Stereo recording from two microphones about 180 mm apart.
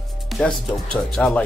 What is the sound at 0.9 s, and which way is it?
Speech, 5° left (ahead or behind).